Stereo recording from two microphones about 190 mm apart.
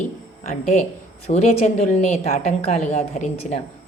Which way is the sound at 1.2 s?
35° left (ahead or behind).